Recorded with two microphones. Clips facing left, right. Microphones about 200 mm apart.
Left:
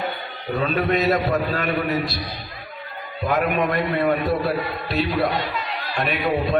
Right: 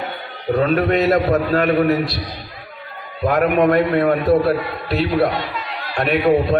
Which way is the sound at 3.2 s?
65° right (ahead or behind).